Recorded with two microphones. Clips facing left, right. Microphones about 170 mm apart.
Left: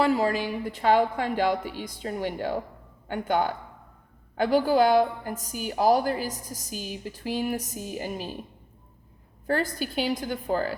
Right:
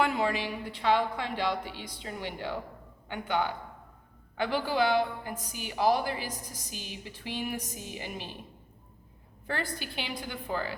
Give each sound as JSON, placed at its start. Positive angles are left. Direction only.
{"t": 0.0, "sound": "a woman's voice", "side_deg": 35}
{"t": 9.5, "sound": "a woman's voice", "side_deg": 40}